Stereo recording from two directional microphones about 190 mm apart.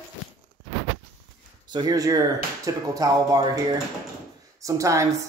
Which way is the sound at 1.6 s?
20° right (ahead or behind).